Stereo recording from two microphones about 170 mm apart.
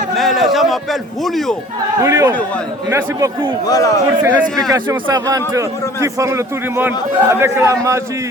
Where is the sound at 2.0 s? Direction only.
20° right (ahead or behind).